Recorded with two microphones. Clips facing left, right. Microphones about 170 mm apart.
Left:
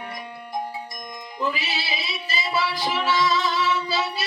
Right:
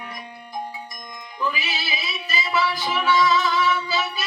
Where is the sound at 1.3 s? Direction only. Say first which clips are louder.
Even; 30° left (ahead or behind).